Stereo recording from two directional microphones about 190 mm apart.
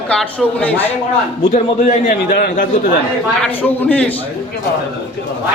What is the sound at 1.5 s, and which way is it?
A man's voice, 45° left (ahead or behind).